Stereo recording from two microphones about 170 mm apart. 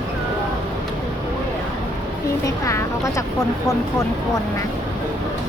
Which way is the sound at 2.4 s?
20° left (ahead or behind).